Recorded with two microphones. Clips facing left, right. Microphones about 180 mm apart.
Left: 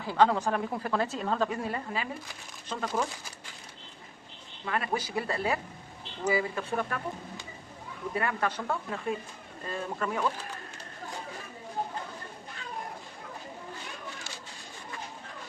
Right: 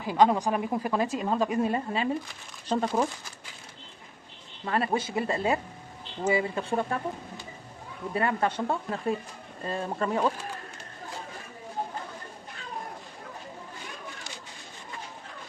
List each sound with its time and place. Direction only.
0.0 s a woman's voice: 15° right (ahead or behind)
4.6 s speech: 30° right (ahead or behind)
8.1 s speech: 25° right (ahead or behind)